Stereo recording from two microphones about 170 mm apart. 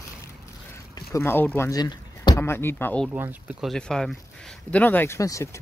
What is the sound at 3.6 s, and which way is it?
Speech, 5° left (ahead or behind).